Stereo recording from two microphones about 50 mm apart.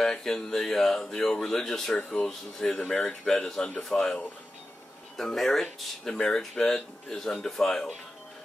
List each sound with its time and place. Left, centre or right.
0.0 s speech: centre